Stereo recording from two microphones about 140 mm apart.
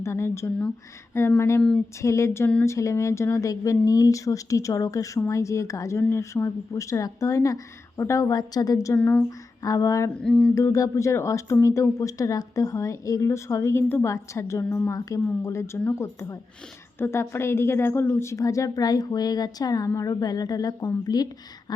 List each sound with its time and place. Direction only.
0.0 s speech: 20° left (ahead or behind)
9.0 s speech: 15° left (ahead or behind)
9.6 s speech: 25° left (ahead or behind)
10.2 s a sound: 5° left (ahead or behind)
10.5 s speech: 20° left (ahead or behind)